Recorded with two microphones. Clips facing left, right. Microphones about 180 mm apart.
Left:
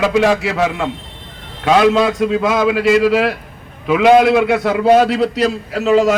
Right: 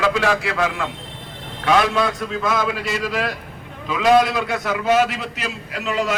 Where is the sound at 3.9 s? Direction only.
25° left (ahead or behind).